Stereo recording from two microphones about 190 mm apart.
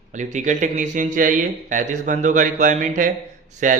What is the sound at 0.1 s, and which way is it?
A man's voice, 40° right (ahead or behind).